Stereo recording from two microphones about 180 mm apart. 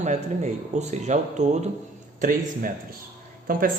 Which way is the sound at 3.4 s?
50° right (ahead or behind).